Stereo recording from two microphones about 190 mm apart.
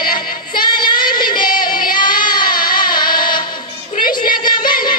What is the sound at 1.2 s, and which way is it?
Female singing, 45° left (ahead or behind).